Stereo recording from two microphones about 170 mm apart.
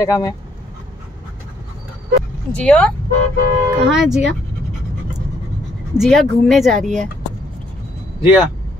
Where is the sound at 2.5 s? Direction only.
5° left (ahead or behind).